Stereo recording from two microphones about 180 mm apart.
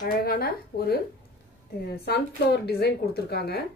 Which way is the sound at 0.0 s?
55° left (ahead or behind).